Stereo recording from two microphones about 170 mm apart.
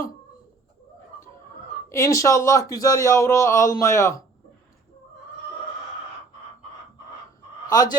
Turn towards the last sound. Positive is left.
turn(degrees=20)  # may be behind; listen again after turning